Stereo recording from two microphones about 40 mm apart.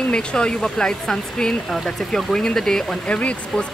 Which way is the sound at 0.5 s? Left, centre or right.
Centre.